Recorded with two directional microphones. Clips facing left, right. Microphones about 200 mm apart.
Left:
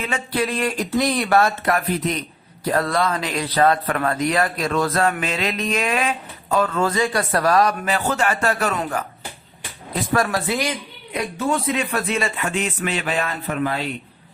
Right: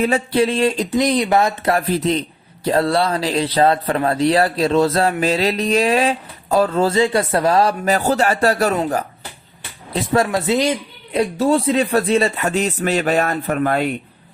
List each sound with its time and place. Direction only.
0.0 s speech: 30° right (ahead or behind)
1.7 s speech: 30° right (ahead or behind)
9.9 s speech: 25° right (ahead or behind); by 13.9 s 50° right (ahead or behind)